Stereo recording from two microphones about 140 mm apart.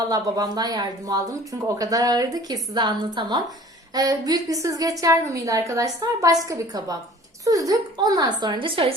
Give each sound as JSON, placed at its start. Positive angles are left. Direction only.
{"t": 0.1, "sound": "a woman's voice", "side_deg": -30}